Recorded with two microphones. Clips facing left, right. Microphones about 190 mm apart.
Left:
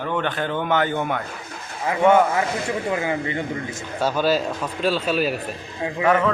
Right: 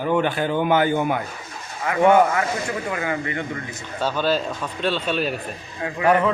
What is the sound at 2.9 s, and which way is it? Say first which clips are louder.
Speech: left 3 dB; 25° left (ahead or behind).